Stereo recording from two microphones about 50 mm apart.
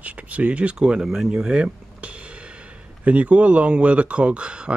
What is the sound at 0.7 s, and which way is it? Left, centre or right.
Speech, centre.